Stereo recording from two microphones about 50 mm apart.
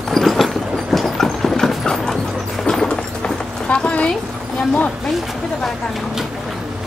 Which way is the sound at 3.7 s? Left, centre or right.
Left.